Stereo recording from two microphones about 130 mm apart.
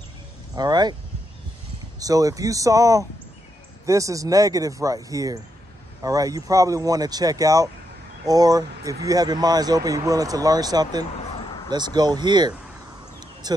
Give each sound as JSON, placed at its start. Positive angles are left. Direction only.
{"t": 0.6, "sound": "speech", "side_deg": -30}
{"t": 2.0, "sound": "speech", "side_deg": -25}
{"t": 13.2, "sound": "a sound", "side_deg": -30}